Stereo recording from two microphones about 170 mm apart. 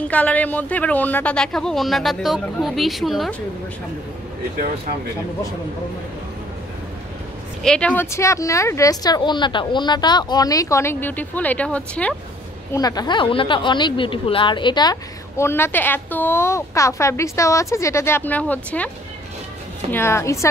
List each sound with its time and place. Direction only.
0.0 s speech: 10° left (ahead or behind)
7.6 s a woman's voice: 5° left (ahead or behind)
12.7 s a woman's voice: 20° left (ahead or behind)
19.9 s a woman's voice: 15° left (ahead or behind)